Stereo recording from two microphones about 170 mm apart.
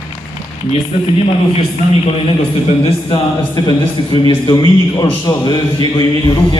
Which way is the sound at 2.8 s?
25° left (ahead or behind).